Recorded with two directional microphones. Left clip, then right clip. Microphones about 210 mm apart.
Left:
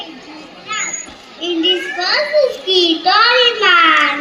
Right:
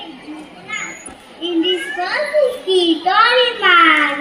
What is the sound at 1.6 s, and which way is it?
Children playing, 40° left (ahead or behind).